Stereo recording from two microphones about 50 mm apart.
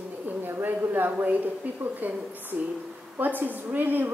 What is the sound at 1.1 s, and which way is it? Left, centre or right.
A woman's voice, right.